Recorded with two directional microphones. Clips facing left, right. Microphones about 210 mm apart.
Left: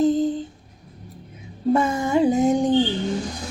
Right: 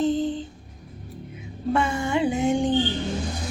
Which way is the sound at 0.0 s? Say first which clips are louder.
Left 4 dB; 40° left (ahead or behind).